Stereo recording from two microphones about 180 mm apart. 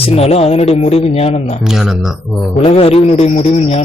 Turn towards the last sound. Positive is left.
turn(degrees=35)  # may be behind; listen again after turning